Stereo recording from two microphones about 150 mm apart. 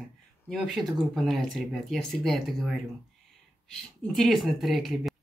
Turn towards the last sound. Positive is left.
turn(degrees=0)  # may be behind; listen again after turning